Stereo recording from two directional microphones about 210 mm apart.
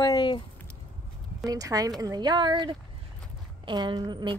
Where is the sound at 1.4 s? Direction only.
15° right (ahead or behind).